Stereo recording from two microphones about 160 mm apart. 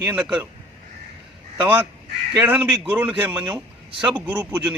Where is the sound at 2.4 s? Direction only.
5° right (ahead or behind).